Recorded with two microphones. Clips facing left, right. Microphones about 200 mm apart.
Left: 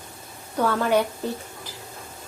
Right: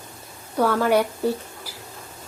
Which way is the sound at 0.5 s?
10° right (ahead or behind).